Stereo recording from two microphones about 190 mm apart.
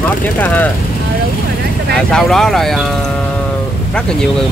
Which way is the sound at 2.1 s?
5° left (ahead or behind).